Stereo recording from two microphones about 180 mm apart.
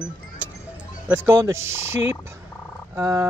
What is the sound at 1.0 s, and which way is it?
Speech, 15° right (ahead or behind).